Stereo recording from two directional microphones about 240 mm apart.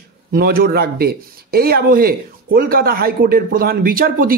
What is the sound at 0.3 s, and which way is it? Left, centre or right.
Speech, right.